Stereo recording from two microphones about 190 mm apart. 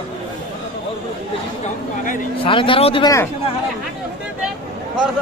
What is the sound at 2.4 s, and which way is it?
Speech, 25° left (ahead or behind).